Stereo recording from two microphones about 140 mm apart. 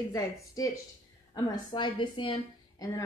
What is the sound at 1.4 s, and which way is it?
A woman's voice, 35° left (ahead or behind).